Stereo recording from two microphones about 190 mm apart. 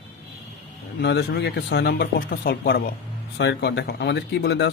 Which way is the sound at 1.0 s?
60° left (ahead or behind).